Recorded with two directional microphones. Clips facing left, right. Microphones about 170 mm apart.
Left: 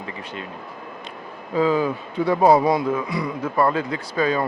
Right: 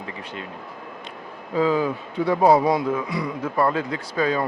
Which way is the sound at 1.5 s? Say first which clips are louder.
Left 1 dB; 15° left (ahead or behind).